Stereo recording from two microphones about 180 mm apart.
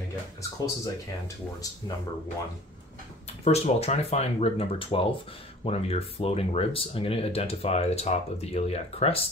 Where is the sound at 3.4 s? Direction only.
35° left (ahead or behind).